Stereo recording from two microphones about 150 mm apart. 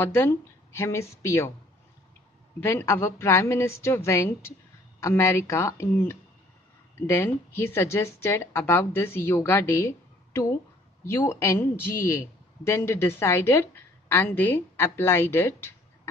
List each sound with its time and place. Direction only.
0.0 s speech: 15° left (ahead or behind)
2.6 s speech: 20° left (ahead or behind)